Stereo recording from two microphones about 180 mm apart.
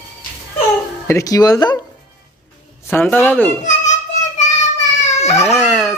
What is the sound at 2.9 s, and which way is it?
Speech, 10° left (ahead or behind).